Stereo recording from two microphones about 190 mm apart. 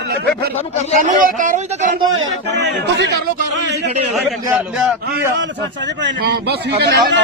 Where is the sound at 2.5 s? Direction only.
65° right (ahead or behind).